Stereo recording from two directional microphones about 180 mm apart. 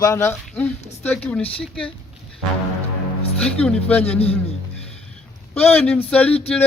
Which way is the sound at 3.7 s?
5° left (ahead or behind).